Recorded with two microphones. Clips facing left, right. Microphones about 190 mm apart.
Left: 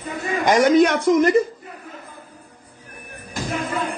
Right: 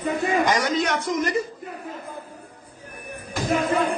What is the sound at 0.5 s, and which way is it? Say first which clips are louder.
Speech: left 8 dB; 55° left (ahead or behind).